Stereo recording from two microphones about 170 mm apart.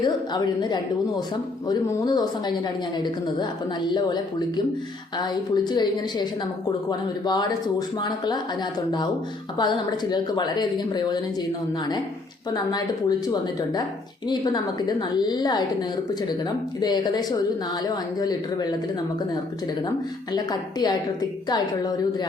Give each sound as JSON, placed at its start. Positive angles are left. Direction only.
{"t": 0.0, "sound": "a woman's voice", "side_deg": 25}
{"t": 7.3, "sound": "a woman's voice", "side_deg": 25}
{"t": 9.6, "sound": "a woman's voice", "side_deg": 25}
{"t": 12.5, "sound": "a woman's voice", "side_deg": 25}
{"t": 16.8, "sound": "a woman's voice", "side_deg": 25}
{"t": 20.3, "sound": "a woman's voice", "side_deg": 25}